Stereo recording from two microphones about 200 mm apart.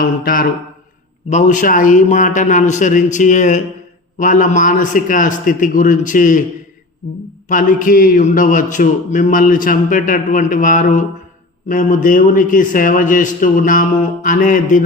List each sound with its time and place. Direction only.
0.3 s mantra: 45° left (ahead or behind)
1.3 s a man's voice: 40° left (ahead or behind)
7.4 s a man's voice: 40° left (ahead or behind)